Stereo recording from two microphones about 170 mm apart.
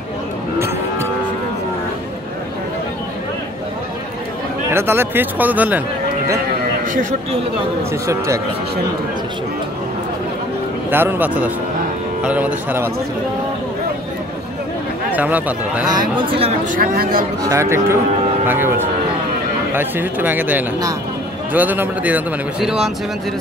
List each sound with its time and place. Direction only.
4.6 s a man's voice: 15° right (ahead or behind)
6.9 s a man's voice: 50° right (ahead or behind)
10.9 s a man's voice: 10° right (ahead or behind)
15.0 s a man's voice: 10° right (ahead or behind)
15.9 s speech: 25° right (ahead or behind)
16.7 s speech: 60° right (ahead or behind)
17.4 s a man's voice: 15° right (ahead or behind)